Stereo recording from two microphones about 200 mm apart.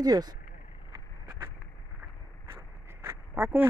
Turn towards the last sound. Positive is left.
turn(degrees=-10)  # may be behind; listen again after turning